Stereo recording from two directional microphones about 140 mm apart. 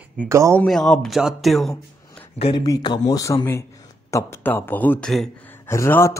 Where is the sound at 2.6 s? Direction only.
30° left (ahead or behind); by 5.2 s 5° left (ahead or behind).